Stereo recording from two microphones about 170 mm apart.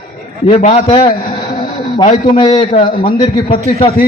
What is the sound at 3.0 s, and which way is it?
Speech, 25° left (ahead or behind).